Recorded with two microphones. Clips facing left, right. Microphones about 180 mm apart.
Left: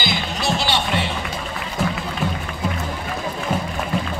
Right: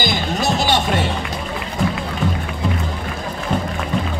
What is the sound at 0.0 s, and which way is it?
Music, 45° right (ahead or behind).